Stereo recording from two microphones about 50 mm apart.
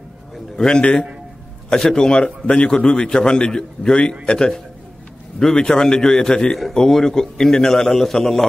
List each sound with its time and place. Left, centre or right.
0.6 s a man's voice: centre
5.6 s a man's voice: centre